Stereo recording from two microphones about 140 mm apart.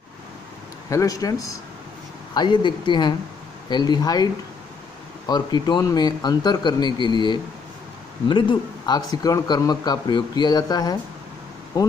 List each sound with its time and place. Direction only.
0.8 s speech: 25° left (ahead or behind)